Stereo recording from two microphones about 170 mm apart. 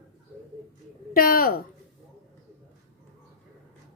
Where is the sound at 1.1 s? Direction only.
60° left (ahead or behind).